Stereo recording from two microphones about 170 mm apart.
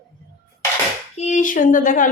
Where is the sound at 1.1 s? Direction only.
45° left (ahead or behind).